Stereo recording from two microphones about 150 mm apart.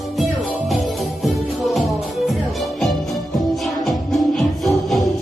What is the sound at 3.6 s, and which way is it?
Music, centre (ahead or behind).